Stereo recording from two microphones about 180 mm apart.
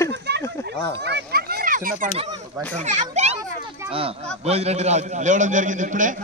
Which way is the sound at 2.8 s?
40° right (ahead or behind).